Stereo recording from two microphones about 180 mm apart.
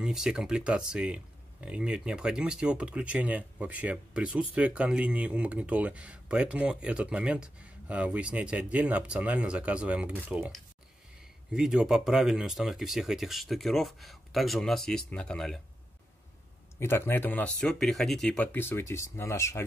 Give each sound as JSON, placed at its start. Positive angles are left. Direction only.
{"t": 0.0, "sound": "speech", "side_deg": -5}
{"t": 11.5, "sound": "speech", "side_deg": -5}
{"t": 16.8, "sound": "speech", "side_deg": 15}